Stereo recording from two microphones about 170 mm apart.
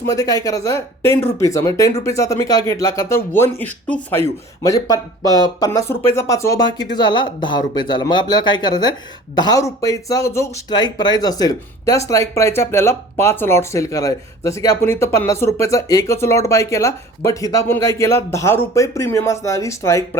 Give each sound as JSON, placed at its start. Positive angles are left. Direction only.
{"t": 0.0, "sound": "speech", "side_deg": 20}